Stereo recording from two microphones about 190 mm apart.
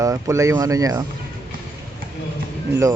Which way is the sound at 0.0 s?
15° right (ahead or behind).